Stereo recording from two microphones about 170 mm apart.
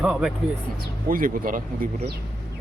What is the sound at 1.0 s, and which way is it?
Speech, 55° right (ahead or behind).